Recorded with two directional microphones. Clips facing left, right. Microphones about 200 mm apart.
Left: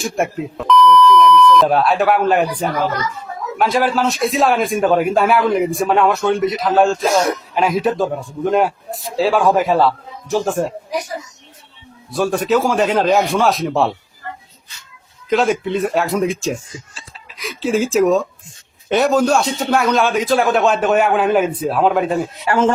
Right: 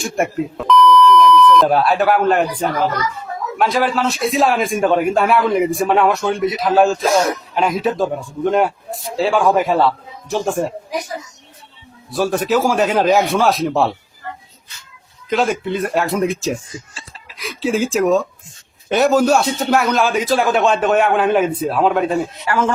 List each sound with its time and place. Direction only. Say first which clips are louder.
0.0 s a man's voice: right 1 dB; centre (ahead or behind)
12.1 s a man's voice: left 1 dB; centre (ahead or behind)
15.3 s a man's voice: left 2 dB; centre (ahead or behind)
22.4 s a man's voice: left 5 dB; 25° left (ahead or behind)